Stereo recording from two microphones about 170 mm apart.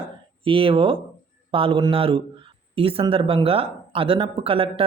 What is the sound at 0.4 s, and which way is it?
Speech, 30° right (ahead or behind).